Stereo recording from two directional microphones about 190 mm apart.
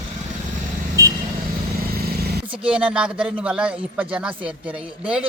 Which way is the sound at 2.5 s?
5° right (ahead or behind).